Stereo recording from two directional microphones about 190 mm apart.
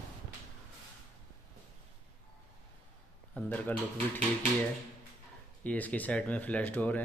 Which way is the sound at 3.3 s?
10° left (ahead or behind).